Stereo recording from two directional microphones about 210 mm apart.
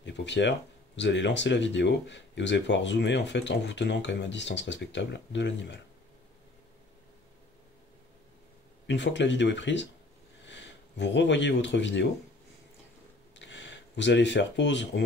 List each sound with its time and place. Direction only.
0.0 s speech: 55° left (ahead or behind)
8.8 s speech: 55° left (ahead or behind)
13.4 s a sound: 60° left (ahead or behind)